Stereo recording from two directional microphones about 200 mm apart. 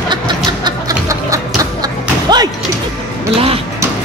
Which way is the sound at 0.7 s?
15° right (ahead or behind).